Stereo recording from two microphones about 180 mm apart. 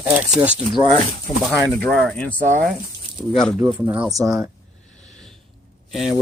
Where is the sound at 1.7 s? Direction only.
5° left (ahead or behind).